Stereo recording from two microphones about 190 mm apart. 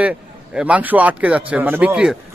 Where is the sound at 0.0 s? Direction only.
5° right (ahead or behind).